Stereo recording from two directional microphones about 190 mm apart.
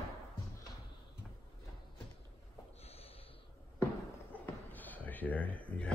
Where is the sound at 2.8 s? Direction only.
30° left (ahead or behind).